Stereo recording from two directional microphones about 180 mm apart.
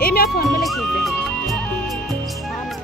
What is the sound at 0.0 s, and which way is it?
Music, 60° left (ahead or behind).